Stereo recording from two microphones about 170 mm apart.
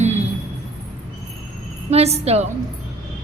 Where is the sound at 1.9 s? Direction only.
40° right (ahead or behind).